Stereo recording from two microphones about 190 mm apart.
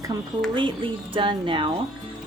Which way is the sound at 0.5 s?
25° right (ahead or behind).